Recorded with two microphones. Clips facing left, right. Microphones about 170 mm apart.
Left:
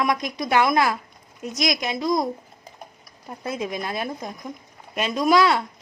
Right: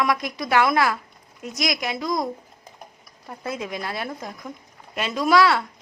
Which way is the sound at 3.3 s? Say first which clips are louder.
Left 2 dB; 20° left (ahead or behind).